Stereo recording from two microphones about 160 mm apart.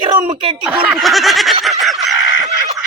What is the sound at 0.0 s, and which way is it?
Speech, 35° right (ahead or behind).